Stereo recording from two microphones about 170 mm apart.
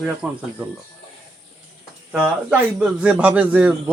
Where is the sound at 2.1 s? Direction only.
5° right (ahead or behind).